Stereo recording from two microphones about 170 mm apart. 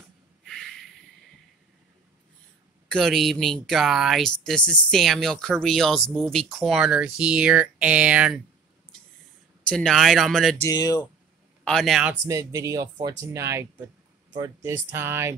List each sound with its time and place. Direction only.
0.5 s a sound: 5° left (ahead or behind)
2.9 s speech: centre (ahead or behind)
9.7 s speech: 5° left (ahead or behind)
10.6 s speech: 20° left (ahead or behind)
11.6 s speech: 5° left (ahead or behind)
12.3 s speech: 20° right (ahead or behind)